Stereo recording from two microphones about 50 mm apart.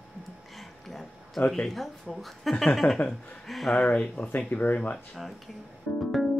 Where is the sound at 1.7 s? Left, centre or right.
Centre.